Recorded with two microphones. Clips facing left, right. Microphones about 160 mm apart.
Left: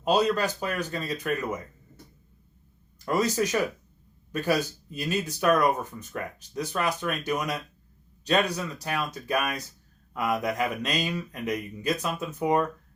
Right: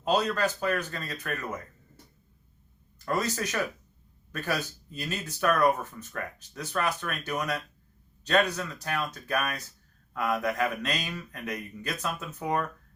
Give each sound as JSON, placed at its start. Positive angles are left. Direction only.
{"t": 0.0, "sound": "speech", "side_deg": 15}
{"t": 3.0, "sound": "speech", "side_deg": 15}